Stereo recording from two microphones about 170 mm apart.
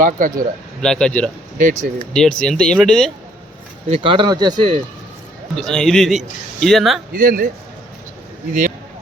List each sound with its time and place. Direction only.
0.0 s speech: 50° right (ahead or behind)
0.8 s a man's voice: 5° left (ahead or behind)
1.5 s speech: 50° right (ahead or behind)
2.1 s a man's voice: 5° left (ahead or behind)
3.8 s speech: 35° right (ahead or behind)
5.5 s a man's voice: 5° left (ahead or behind)
7.1 s speech: 55° right (ahead or behind)